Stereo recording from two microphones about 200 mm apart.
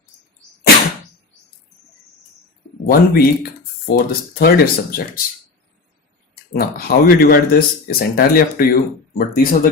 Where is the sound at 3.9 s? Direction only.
50° left (ahead or behind).